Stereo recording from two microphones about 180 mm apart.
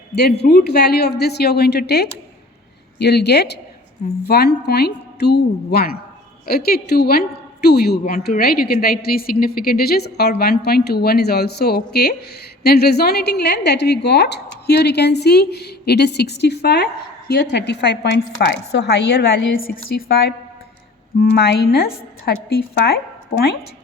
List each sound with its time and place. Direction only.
0.2 s a woman's voice: 65° left (ahead or behind)